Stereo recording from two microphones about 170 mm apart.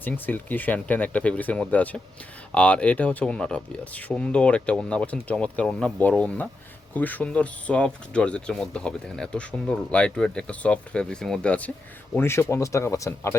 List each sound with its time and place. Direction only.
0.0 s speech: 10° left (ahead or behind)